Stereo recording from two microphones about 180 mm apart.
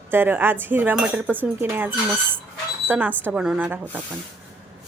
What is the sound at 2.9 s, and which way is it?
Speech, 10° right (ahead or behind).